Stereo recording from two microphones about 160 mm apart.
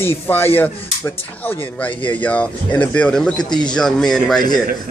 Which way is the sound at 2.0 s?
30° left (ahead or behind).